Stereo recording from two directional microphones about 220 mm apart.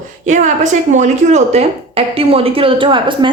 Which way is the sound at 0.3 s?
35° right (ahead or behind).